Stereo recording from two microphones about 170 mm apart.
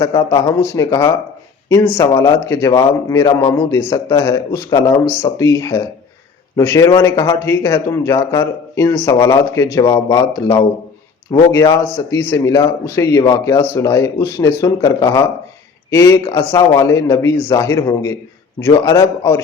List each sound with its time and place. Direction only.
0.0 s a man's voice: 20° left (ahead or behind)